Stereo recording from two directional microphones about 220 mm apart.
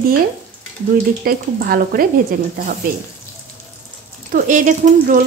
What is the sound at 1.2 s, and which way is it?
Speech, 40° right (ahead or behind).